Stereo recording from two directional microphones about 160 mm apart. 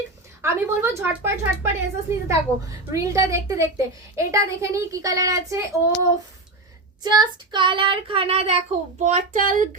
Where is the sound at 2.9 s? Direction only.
20° right (ahead or behind).